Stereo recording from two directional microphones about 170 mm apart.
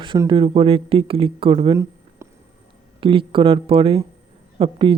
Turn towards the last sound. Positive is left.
turn(degrees=-30)  # may be behind; listen again after turning